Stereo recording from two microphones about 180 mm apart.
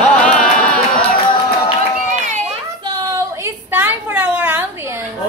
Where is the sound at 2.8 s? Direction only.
20° right (ahead or behind).